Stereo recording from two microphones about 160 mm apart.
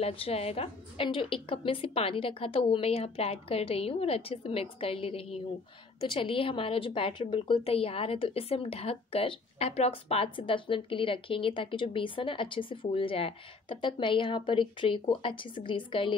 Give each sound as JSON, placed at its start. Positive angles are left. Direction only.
{"t": 0.0, "sound": "a woman's voice", "side_deg": 35}